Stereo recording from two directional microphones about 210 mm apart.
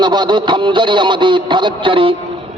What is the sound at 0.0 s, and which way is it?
A man's voice, 20° right (ahead or behind).